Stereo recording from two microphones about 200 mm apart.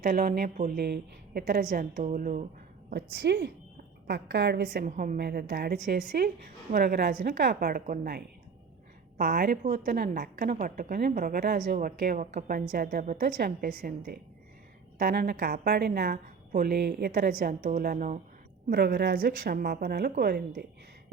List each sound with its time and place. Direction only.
0.0 s a woman's voice: 50° right (ahead or behind)
2.9 s a woman's voice: 55° right (ahead or behind)
18.7 s a woman's voice: 55° right (ahead or behind)